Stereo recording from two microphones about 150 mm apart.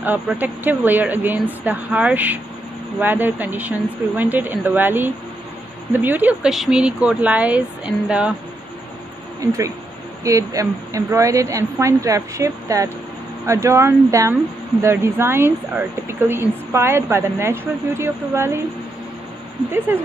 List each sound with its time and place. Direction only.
0.0 s a woman's voice: 10° right (ahead or behind)
9.4 s a woman's voice: 20° right (ahead or behind)